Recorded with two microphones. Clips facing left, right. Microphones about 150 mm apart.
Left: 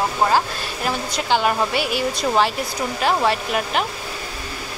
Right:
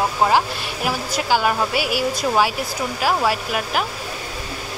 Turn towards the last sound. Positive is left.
turn(degrees=-5)  # may be behind; listen again after turning